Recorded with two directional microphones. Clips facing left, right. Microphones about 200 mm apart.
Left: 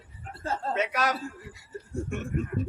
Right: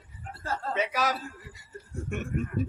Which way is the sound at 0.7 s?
Centre (ahead or behind).